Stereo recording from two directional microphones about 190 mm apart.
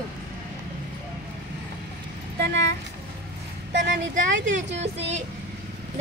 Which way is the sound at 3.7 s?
70° right (ahead or behind).